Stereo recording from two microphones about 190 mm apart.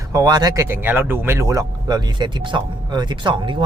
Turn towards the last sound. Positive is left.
turn(degrees=-25)  # may be behind; listen again after turning